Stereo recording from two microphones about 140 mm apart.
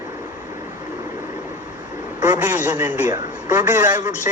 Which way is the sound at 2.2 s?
10° right (ahead or behind).